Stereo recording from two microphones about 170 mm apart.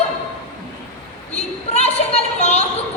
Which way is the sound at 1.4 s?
40° left (ahead or behind).